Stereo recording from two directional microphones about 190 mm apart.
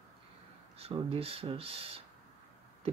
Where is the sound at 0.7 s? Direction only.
30° right (ahead or behind).